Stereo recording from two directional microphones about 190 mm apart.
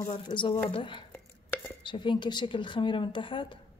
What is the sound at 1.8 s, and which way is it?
A woman's voice, 25° left (ahead or behind).